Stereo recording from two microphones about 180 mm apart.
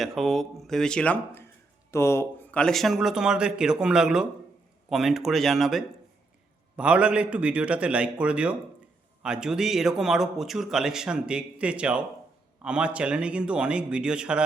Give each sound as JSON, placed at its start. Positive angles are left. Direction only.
{"t": 0.0, "sound": "a man's voice", "side_deg": 0}